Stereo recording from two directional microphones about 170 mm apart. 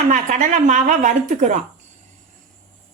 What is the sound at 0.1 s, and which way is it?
A woman's voice, 50° right (ahead or behind).